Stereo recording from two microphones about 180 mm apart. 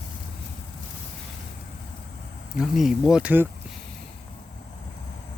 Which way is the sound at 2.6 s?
Centre (ahead or behind).